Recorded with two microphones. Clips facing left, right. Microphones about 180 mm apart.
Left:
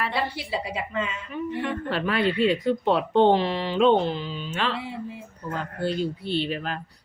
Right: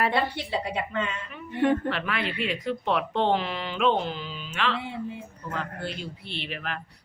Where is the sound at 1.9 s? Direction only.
35° left (ahead or behind).